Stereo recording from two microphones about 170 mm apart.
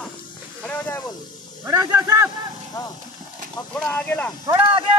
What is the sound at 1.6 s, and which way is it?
Snake, 15° right (ahead or behind).